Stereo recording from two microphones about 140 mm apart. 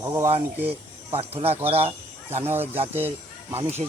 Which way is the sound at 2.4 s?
15° right (ahead or behind).